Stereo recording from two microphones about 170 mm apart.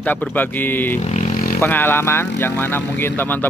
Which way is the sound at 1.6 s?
15° left (ahead or behind).